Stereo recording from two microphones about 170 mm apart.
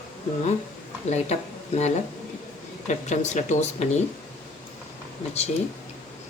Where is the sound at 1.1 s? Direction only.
40° left (ahead or behind).